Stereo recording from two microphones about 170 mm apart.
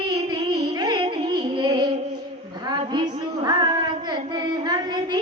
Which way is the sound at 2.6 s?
25° right (ahead or behind).